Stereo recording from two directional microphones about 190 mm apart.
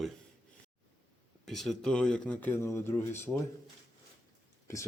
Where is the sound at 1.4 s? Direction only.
Centre (ahead or behind).